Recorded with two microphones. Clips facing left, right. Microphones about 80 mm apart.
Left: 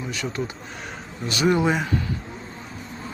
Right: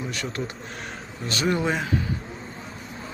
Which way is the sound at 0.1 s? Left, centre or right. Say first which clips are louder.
Left 2 dB; right.